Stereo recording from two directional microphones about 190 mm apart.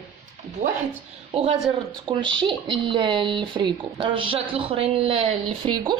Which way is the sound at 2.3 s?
25° right (ahead or behind).